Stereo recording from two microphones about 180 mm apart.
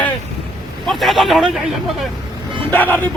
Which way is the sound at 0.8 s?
Centre (ahead or behind).